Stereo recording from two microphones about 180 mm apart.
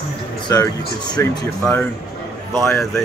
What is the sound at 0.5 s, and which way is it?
Speech, 15° left (ahead or behind).